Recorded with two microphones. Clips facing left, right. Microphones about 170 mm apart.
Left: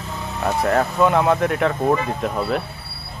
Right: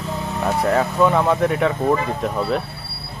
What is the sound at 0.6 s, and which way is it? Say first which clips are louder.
Speech: even; centre (ahead or behind).